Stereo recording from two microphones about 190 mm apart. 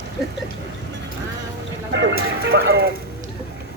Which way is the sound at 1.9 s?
70° right (ahead or behind).